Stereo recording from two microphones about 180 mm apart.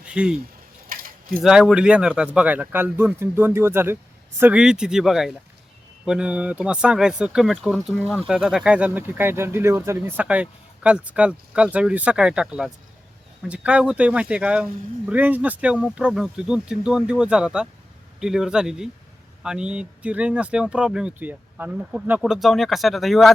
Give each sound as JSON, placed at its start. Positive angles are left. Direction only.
{"t": 0.0, "sound": "speech", "side_deg": -5}
{"t": 0.9, "sound": "keys jangling", "side_deg": -55}
{"t": 1.4, "sound": "speech", "side_deg": -5}